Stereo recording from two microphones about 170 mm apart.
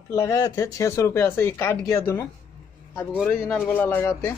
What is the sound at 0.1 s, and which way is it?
Speech, 15° left (ahead or behind).